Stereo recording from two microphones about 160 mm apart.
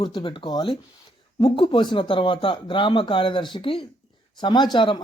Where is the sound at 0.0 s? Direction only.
30° left (ahead or behind).